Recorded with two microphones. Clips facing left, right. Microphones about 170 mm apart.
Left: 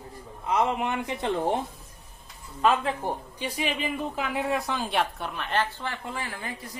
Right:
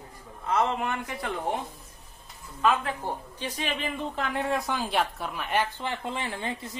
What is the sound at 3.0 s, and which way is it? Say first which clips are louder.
Speech: left 2 dB; 15° left (ahead or behind).